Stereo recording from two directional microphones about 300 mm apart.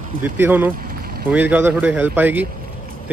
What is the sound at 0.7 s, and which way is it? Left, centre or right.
Boat, right.